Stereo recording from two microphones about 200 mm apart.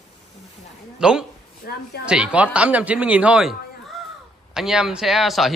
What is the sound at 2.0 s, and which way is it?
A man's voice, 5° right (ahead or behind).